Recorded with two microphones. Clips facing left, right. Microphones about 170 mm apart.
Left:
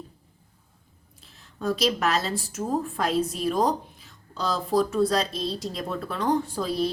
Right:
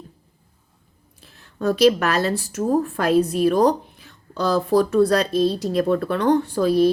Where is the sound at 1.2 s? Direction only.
65° right (ahead or behind).